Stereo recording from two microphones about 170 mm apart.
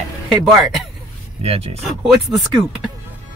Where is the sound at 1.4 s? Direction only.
35° right (ahead or behind).